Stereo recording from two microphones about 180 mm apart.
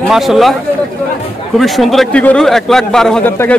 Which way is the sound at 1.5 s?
Centre (ahead or behind).